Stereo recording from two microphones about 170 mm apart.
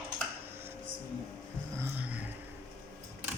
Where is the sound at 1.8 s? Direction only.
10° right (ahead or behind).